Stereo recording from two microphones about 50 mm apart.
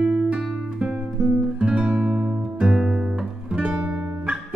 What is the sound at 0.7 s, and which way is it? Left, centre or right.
Guitar, centre.